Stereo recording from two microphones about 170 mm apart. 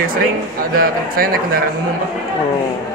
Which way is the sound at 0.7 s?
60° right (ahead or behind).